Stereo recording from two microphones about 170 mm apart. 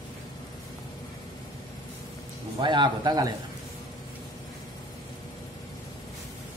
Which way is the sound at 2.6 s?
25° right (ahead or behind).